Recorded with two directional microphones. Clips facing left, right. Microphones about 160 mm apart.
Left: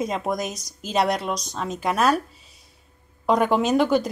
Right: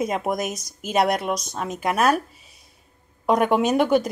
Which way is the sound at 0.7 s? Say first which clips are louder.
Right 1 dB; 50° right (ahead or behind).